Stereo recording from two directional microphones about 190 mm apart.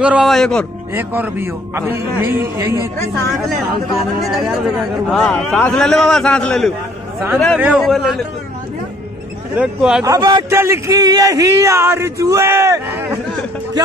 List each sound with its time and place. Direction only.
0.0 s a man's voice: 5° right (ahead or behind)
0.9 s a man's voice: 10° right (ahead or behind)
4.3 s a man's voice: centre (ahead or behind)
9.6 s a man's voice: 5° right (ahead or behind)
10.0 s a man's voice: 20° right (ahead or behind)